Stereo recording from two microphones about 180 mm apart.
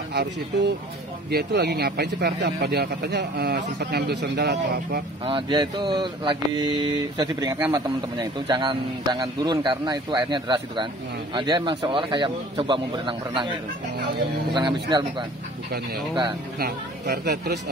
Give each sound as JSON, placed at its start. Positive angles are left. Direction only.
{"t": 0.1, "sound": "speech", "side_deg": -65}
{"t": 5.2, "sound": "a man's voice", "side_deg": -25}
{"t": 7.5, "sound": "a man's voice", "side_deg": -10}
{"t": 8.2, "sound": "a man's voice", "side_deg": -25}
{"t": 16.5, "sound": "speech", "side_deg": -60}